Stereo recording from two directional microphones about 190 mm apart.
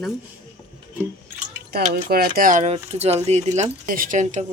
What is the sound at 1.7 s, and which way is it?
Speech, 55° right (ahead or behind).